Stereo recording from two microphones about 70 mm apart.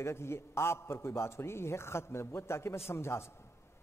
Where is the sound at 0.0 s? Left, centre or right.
Left.